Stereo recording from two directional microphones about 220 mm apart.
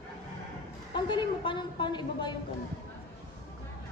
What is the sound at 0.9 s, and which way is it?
A woman's voice, 20° left (ahead or behind).